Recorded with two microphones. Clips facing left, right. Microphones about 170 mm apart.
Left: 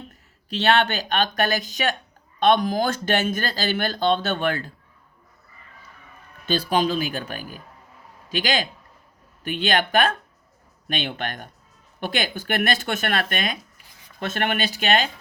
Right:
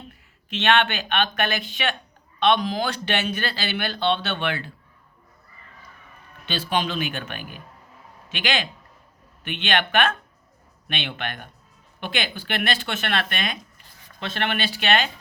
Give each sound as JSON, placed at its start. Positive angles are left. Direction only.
{"t": 0.1, "sound": "speech", "side_deg": 35}
{"t": 6.5, "sound": "speech", "side_deg": 40}